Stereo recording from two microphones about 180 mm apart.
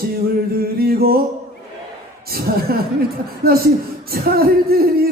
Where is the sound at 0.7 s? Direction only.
55° right (ahead or behind).